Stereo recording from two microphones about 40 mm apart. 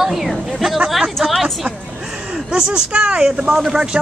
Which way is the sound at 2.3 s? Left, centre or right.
Centre.